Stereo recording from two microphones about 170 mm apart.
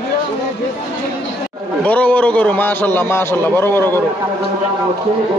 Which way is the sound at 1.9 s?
10° left (ahead or behind).